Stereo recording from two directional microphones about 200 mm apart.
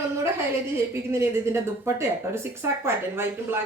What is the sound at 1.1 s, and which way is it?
A woman's voice, 15° right (ahead or behind).